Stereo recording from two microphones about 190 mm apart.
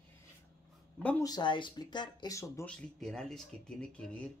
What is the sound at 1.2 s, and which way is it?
Speech, 20° left (ahead or behind).